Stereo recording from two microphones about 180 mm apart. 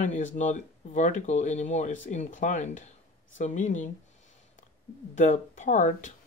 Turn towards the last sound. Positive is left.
turn(degrees=45)  # may be behind; listen again after turning